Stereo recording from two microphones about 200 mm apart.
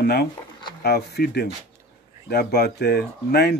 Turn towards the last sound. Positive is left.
turn(degrees=55)  # may be behind; listen again after turning